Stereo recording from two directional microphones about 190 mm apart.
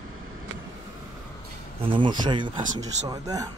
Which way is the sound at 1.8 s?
25° right (ahead or behind).